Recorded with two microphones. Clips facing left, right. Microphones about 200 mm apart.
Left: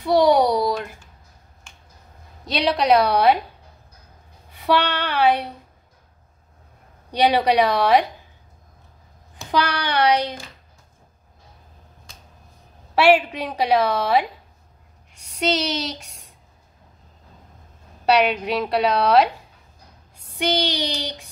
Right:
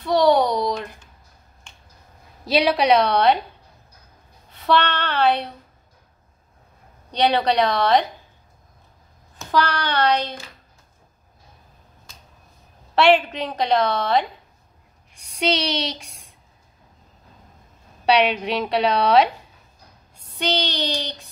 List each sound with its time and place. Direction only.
0.0 s a sound: 10° left (ahead or behind)
2.4 s a woman's voice: 5° right (ahead or behind)
4.5 s a sound: 10° left (ahead or behind)
7.1 s a woman's voice: 10° left (ahead or behind)
9.4 s a woman's voice: 15° left (ahead or behind)
12.9 s a woman's voice: 10° left (ahead or behind)
15.3 s a woman's voice: 5° left (ahead or behind)
18.0 s a woman's voice: centre (ahead or behind)
20.3 s a woman's voice: 10° left (ahead or behind)